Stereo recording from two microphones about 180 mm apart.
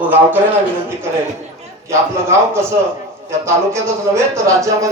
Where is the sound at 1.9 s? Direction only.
15° right (ahead or behind).